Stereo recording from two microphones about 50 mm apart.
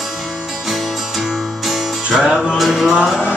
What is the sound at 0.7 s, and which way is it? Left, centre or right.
Music, centre.